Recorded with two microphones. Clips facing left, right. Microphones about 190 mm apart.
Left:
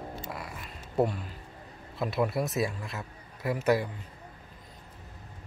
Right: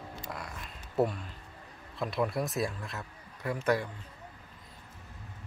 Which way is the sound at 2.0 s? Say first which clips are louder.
Left 2 dB; 5° left (ahead or behind).